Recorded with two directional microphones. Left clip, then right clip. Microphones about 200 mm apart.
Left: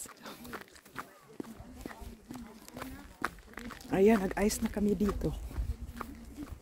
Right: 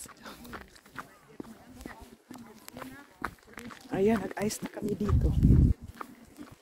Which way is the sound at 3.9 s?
10° left (ahead or behind).